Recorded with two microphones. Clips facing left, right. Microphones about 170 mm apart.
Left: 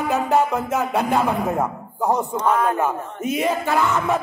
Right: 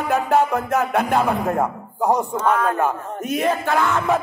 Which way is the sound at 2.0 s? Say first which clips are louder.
Right 1 dB; 15° right (ahead or behind).